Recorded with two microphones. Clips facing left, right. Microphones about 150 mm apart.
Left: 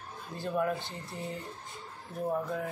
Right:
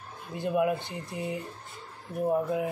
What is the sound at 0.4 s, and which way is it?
Speech, 15° right (ahead or behind).